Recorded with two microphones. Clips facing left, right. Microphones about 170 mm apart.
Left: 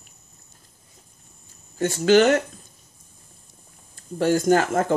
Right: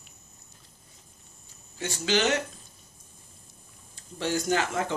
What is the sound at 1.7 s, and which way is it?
Speech, 50° left (ahead or behind).